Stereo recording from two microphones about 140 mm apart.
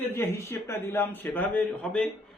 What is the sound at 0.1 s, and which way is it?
A man's voice, 20° left (ahead or behind).